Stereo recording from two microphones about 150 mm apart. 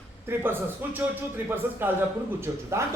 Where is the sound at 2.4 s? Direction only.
20° right (ahead or behind).